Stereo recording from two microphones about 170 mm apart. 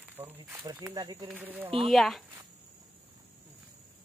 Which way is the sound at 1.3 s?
10° right (ahead or behind).